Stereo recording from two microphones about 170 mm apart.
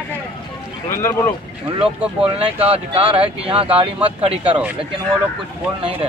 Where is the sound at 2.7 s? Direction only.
35° right (ahead or behind).